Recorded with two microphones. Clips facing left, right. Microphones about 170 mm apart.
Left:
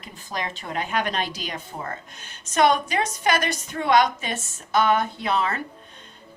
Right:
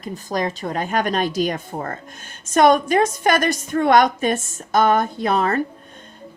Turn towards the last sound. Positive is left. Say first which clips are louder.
# right 6 dB
turn(degrees=-45)  # may be behind; listen again after turning